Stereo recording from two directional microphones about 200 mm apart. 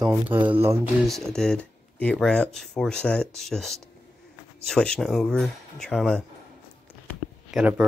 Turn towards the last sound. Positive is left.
turn(degrees=0)  # may be behind; listen again after turning